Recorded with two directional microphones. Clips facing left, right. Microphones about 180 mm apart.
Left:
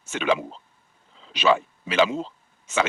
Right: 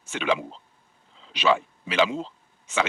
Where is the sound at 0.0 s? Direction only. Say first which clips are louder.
Left 2 dB; 45° left (ahead or behind).